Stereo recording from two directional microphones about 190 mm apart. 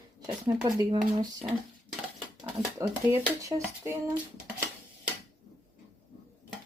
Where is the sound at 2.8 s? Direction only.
15° right (ahead or behind).